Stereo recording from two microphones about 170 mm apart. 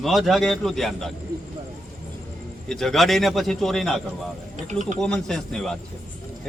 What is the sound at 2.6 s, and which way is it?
Speech, centre (ahead or behind).